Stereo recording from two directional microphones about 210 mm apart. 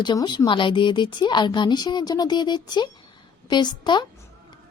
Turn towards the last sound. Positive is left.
turn(degrees=20)  # may be behind; listen again after turning